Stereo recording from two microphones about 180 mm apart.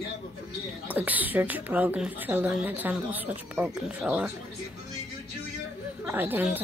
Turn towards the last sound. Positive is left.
turn(degrees=-10)  # may be behind; listen again after turning